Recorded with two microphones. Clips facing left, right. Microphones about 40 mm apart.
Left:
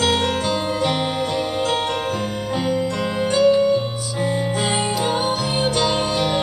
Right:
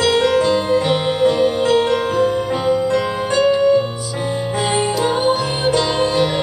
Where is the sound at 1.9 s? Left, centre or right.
Right.